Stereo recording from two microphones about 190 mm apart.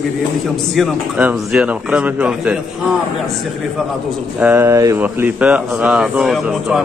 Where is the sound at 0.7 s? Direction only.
5° right (ahead or behind).